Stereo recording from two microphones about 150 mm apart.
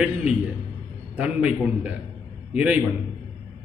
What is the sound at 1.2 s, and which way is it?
Speech, 5° right (ahead or behind).